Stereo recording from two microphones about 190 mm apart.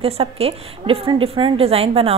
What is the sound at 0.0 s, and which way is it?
A woman's voice, 30° right (ahead or behind).